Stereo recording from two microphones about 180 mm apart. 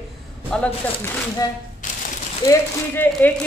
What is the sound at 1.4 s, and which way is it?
Speech, 20° left (ahead or behind).